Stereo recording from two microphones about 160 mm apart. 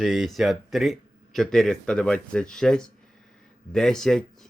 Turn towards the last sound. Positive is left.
turn(degrees=5)  # may be behind; listen again after turning